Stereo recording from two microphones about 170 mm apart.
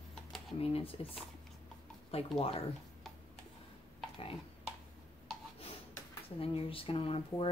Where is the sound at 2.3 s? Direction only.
35° left (ahead or behind).